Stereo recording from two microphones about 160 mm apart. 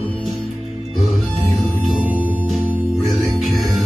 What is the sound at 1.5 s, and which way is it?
Music, centre (ahead or behind).